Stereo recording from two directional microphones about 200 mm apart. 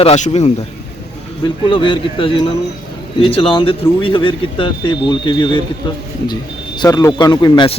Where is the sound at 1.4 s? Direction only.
25° left (ahead or behind).